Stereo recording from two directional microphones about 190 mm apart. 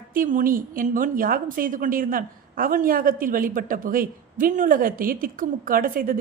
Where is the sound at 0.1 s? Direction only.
45° right (ahead or behind).